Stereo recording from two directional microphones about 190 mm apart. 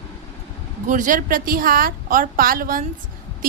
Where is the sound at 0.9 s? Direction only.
45° right (ahead or behind).